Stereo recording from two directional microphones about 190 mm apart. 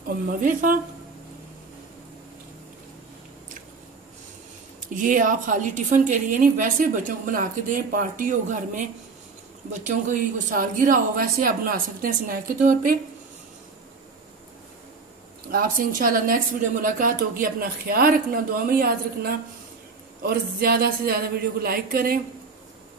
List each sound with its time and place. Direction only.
0.3 s a woman's voice: 45° right (ahead or behind)
4.7 s a woman's voice: 45° right (ahead or behind)
15.4 s a woman's voice: 50° right (ahead or behind)